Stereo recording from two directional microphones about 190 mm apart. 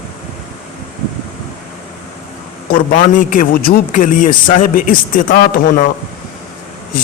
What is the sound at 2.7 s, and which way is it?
A man's voice, 45° left (ahead or behind).